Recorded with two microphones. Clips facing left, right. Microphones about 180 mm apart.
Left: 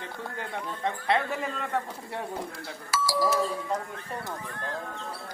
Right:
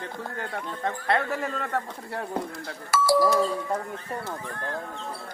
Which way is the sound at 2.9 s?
55° right (ahead or behind).